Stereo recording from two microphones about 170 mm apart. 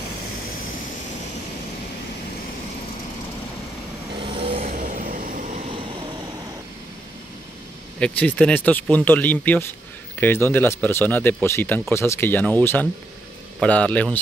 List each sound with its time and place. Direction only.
4.2 s vehicle: 30° right (ahead or behind)
4.6 s vehicle: 50° right (ahead or behind)
8.0 s speech: 5° left (ahead or behind)